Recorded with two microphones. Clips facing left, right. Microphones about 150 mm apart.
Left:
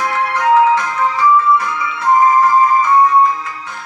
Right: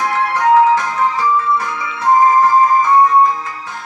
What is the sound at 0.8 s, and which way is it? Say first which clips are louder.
Music: left 2 dB; 35° right (ahead or behind).